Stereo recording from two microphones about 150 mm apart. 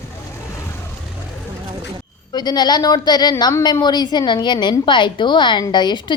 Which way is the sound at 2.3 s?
30° left (ahead or behind).